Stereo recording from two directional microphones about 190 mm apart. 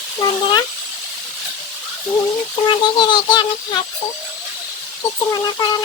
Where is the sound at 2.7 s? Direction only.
25° left (ahead or behind).